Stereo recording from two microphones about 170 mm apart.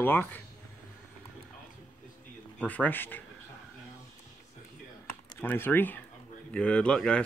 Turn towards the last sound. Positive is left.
turn(degrees=5)  # may be behind; listen again after turning